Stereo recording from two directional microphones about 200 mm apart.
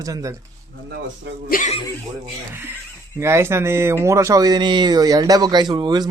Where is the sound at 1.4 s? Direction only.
45° left (ahead or behind).